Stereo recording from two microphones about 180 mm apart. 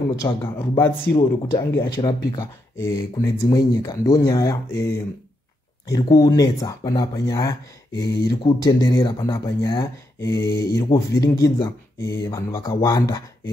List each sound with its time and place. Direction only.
0.1 s speech: 15° left (ahead or behind)
1.1 s speech: 75° left (ahead or behind)
1.8 s speech: 20° left (ahead or behind)